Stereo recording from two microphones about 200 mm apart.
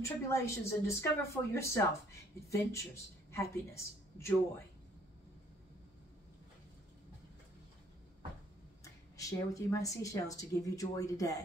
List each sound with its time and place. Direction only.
0.0 s a woman's voice: 15° left (ahead or behind)
8.8 s speech: 15° left (ahead or behind)